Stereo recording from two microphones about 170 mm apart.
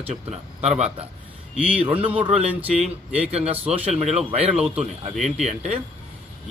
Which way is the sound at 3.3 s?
40° right (ahead or behind).